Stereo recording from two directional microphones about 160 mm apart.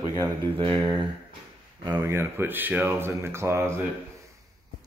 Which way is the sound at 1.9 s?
15° right (ahead or behind).